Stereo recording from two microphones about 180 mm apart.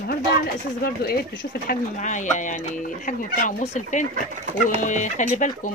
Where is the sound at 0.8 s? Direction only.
60° left (ahead or behind); by 1.5 s 75° left (ahead or behind).